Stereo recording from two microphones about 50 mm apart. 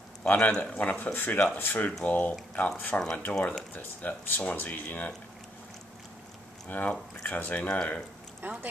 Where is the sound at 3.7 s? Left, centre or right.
Left.